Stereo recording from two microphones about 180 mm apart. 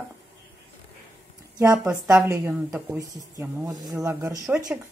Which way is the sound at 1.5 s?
15° right (ahead or behind).